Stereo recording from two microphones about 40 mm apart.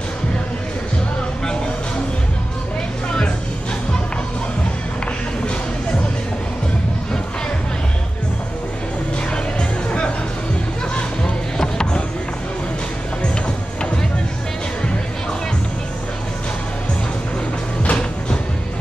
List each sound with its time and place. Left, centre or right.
9.3 s music: left
11.6 s music: left
17.8 s music: left